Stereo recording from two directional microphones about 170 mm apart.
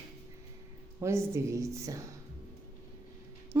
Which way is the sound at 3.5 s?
15° right (ahead or behind).